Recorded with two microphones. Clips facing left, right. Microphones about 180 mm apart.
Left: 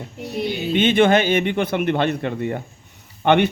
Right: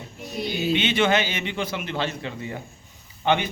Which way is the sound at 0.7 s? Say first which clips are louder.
Left 6 dB; 50° left (ahead or behind).